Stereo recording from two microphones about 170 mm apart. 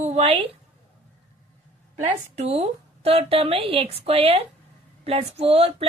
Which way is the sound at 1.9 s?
45° right (ahead or behind).